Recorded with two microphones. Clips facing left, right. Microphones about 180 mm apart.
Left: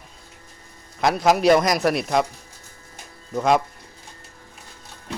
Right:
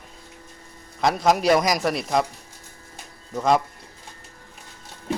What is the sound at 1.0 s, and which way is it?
Speech, centre (ahead or behind).